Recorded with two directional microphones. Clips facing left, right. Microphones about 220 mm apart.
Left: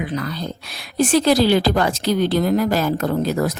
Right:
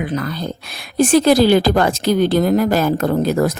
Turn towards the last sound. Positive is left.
turn(degrees=-50)  # may be behind; listen again after turning